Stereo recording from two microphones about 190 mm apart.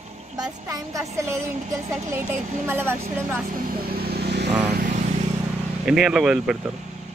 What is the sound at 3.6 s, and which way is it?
Vehicle, 55° right (ahead or behind).